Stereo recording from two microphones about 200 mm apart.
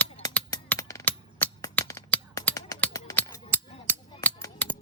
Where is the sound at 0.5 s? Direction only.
15° left (ahead or behind).